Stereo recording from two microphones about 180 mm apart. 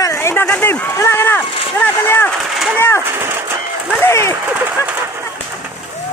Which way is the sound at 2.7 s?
10° left (ahead or behind).